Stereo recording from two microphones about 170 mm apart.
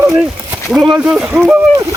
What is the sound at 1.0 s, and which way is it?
Speech, 5° right (ahead or behind).